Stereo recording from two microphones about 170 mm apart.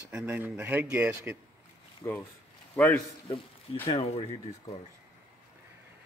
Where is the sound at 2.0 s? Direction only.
20° left (ahead or behind).